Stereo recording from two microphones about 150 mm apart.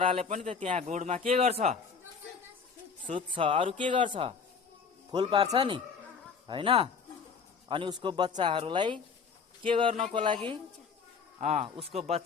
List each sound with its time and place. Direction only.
0.0 s speech: 40° right (ahead or behind)
3.2 s speech: 35° right (ahead or behind)
11.3 s speech: 45° right (ahead or behind)